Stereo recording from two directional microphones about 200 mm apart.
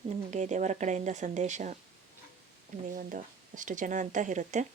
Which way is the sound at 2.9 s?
40° right (ahead or behind).